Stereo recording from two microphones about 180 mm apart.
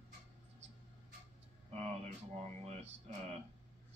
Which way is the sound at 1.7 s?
35° right (ahead or behind).